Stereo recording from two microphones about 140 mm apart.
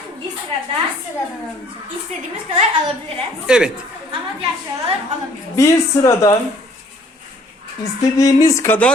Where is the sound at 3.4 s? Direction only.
5° right (ahead or behind).